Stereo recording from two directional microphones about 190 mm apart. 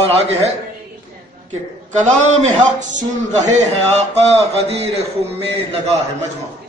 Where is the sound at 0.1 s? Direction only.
35° right (ahead or behind).